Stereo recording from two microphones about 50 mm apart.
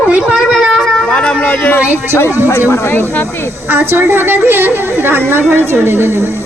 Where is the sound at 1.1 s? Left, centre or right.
Centre.